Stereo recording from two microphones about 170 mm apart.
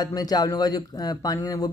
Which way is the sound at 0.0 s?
25° left (ahead or behind).